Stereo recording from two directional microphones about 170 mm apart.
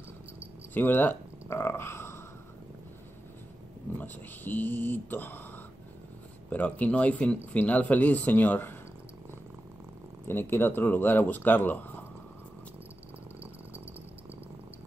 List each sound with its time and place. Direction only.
0.7 s speech: 10° left (ahead or behind)
4.0 s speech: 10° left (ahead or behind)
6.5 s speech: 10° left (ahead or behind)
10.2 s speech: 15° left (ahead or behind)